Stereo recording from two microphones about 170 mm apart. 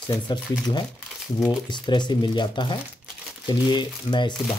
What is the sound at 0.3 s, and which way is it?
Speech, 25° left (ahead or behind).